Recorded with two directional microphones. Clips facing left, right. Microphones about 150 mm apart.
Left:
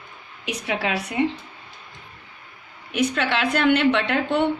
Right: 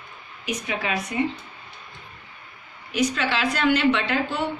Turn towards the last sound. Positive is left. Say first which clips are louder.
# left 4 dB
turn(degrees=65)  # may be behind; listen again after turning